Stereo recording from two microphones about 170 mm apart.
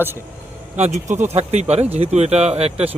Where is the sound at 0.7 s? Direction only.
40° right (ahead or behind).